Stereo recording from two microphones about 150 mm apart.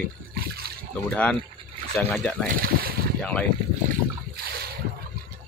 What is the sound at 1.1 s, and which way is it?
Speech, 10° left (ahead or behind).